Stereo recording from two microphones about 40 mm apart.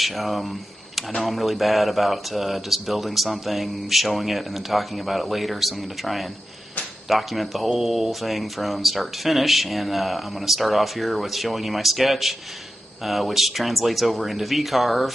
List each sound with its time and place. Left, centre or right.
0.0 s speech: centre